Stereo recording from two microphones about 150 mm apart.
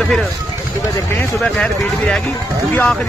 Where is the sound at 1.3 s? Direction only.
5° left (ahead or behind).